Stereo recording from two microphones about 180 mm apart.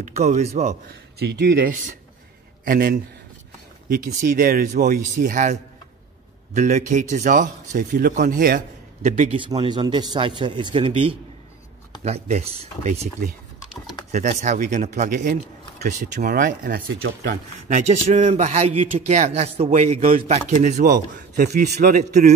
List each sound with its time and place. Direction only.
0.0 s a man's voice: 40° right (ahead or behind)
1.2 s a man's voice: 65° right (ahead or behind); by 9.4 s 40° right (ahead or behind)
9.4 s a man's voice: 25° right (ahead or behind); by 22.3 s 50° right (ahead or behind)